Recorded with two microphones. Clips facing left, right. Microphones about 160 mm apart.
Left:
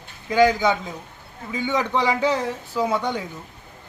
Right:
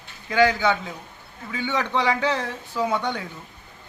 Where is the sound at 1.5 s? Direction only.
10° left (ahead or behind).